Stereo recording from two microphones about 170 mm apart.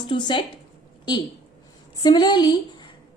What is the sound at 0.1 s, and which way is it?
A woman's voice, 25° left (ahead or behind).